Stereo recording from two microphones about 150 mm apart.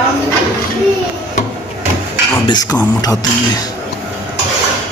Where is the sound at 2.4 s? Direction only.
25° left (ahead or behind).